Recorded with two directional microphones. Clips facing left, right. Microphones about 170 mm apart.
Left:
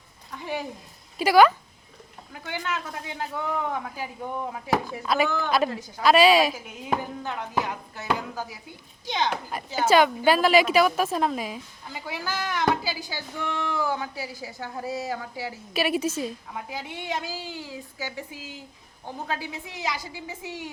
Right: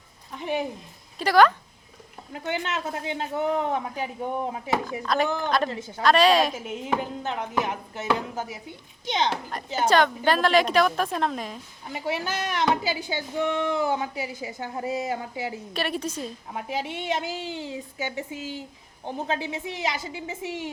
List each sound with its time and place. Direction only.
0.3 s speech: 20° right (ahead or behind)
1.2 s a woman's voice: 10° left (ahead or behind)
2.3 s speech: 25° right (ahead or behind)
5.0 s a woman's voice: 5° left (ahead or behind)
7.2 s speech: 20° right (ahead or behind)
9.8 s a woman's voice: 5° left (ahead or behind)
11.9 s speech: 20° right (ahead or behind)
15.7 s a woman's voice: 5° left (ahead or behind)
16.5 s speech: 25° right (ahead or behind)